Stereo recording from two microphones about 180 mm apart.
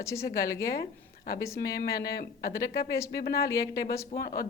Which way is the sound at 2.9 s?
20° left (ahead or behind).